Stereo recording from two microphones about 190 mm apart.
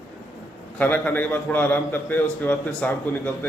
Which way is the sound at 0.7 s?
10° left (ahead or behind).